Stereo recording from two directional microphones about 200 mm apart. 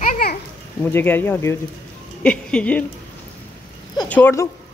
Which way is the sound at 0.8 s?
10° left (ahead or behind).